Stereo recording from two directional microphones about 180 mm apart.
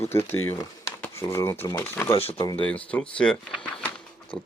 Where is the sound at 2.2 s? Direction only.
35° left (ahead or behind).